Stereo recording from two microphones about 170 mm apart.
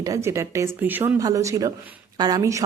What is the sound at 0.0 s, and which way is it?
A woman's voice, 20° right (ahead or behind).